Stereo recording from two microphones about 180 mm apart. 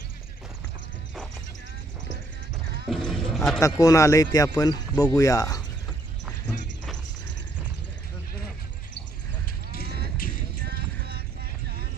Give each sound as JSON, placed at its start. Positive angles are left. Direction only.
{"t": 2.9, "sound": "horse", "side_deg": 0}
{"t": 3.6, "sound": "speech", "side_deg": 20}
{"t": 10.2, "sound": "music", "side_deg": 55}
{"t": 10.7, "sound": "music", "side_deg": -60}